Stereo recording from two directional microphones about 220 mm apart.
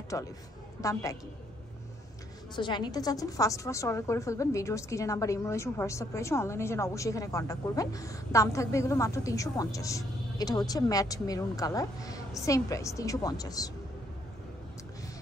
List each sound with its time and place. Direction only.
0.1 s a woman's voice: 15° left (ahead or behind)
2.5 s a woman's voice: 20° left (ahead or behind)